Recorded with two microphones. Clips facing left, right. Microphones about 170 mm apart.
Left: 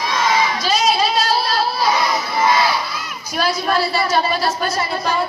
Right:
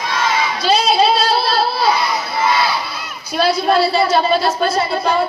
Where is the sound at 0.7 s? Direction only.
30° right (ahead or behind).